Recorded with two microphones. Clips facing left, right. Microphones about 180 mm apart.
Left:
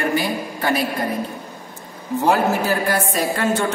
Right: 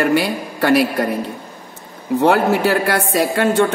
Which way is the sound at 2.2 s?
70° right (ahead or behind).